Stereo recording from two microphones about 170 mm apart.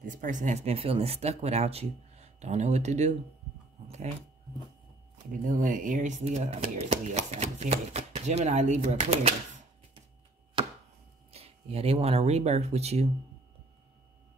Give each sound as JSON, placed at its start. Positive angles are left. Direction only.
{"t": 0.0, "sound": "speech", "side_deg": -50}
{"t": 3.8, "sound": "a sound", "side_deg": -40}
{"t": 5.3, "sound": "speech", "side_deg": -50}
{"t": 10.6, "sound": "chopping", "side_deg": -30}
{"t": 11.3, "sound": "speech", "side_deg": -35}